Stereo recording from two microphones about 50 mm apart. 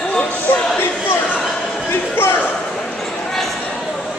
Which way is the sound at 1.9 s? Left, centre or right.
Left.